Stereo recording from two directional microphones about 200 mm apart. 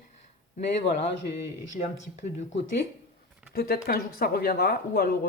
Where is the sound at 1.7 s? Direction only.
35° left (ahead or behind).